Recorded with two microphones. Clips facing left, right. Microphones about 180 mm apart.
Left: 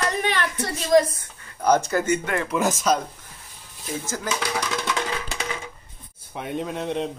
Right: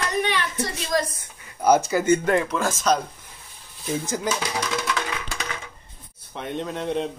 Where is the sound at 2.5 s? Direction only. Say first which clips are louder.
Left 2 dB; 15° left (ahead or behind).